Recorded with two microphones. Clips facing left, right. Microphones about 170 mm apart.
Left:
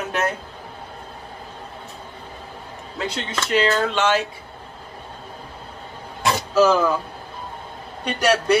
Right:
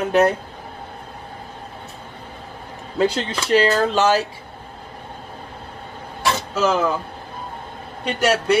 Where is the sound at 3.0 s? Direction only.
35° right (ahead or behind).